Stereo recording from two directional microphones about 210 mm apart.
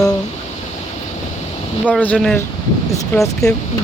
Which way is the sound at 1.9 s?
10° left (ahead or behind).